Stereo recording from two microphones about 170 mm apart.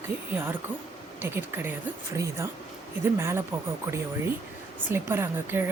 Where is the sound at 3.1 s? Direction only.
15° right (ahead or behind).